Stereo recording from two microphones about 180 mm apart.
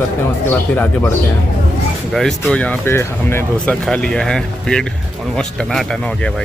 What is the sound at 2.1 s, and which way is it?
Speech, centre (ahead or behind).